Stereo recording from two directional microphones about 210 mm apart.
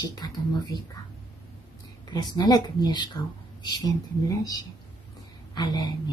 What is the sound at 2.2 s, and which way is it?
A woman's voice, 20° left (ahead or behind).